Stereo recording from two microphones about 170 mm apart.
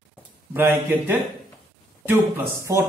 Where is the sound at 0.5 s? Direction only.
10° right (ahead or behind).